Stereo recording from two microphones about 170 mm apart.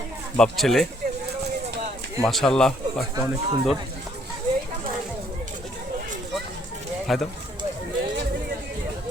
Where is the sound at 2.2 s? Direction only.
5° left (ahead or behind).